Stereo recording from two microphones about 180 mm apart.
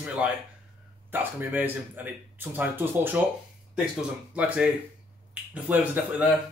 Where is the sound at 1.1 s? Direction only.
10° right (ahead or behind).